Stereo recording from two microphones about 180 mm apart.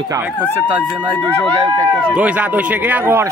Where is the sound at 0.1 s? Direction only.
10° right (ahead or behind).